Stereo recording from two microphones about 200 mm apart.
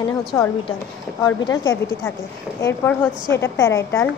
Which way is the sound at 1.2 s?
20° left (ahead or behind).